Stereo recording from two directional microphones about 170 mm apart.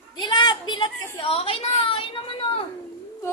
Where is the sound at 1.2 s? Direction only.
35° left (ahead or behind).